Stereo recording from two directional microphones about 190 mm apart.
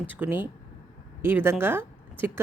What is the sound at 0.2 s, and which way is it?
Speech, 10° right (ahead or behind).